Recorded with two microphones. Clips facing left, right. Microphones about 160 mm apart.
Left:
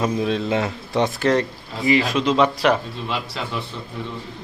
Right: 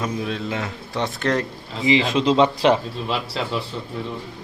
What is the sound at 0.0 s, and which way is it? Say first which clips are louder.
A man's voice: left 4 dB; 25° left (ahead or behind).